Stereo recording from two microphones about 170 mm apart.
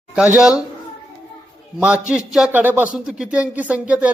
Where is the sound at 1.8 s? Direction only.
5° right (ahead or behind).